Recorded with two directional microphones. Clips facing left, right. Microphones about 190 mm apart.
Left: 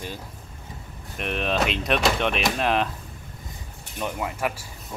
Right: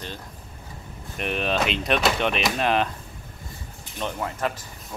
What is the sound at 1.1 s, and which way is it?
Speech, centre (ahead or behind).